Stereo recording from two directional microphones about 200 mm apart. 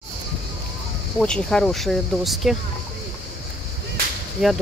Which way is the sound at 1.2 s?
5° left (ahead or behind).